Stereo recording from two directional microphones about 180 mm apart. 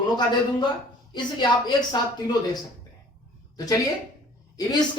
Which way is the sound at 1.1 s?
25° left (ahead or behind).